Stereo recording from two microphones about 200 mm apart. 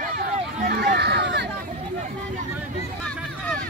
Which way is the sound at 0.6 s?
55° right (ahead or behind).